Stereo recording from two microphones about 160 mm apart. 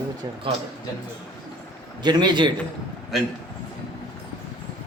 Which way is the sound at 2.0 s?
25° right (ahead or behind).